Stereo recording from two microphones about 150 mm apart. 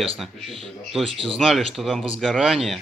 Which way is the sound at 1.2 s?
Centre (ahead or behind).